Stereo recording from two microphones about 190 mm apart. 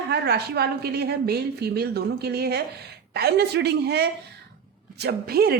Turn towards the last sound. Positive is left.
turn(degrees=-55)  # may be behind; listen again after turning